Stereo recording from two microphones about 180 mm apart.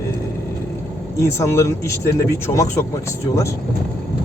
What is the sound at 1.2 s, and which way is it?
Speech, 15° left (ahead or behind).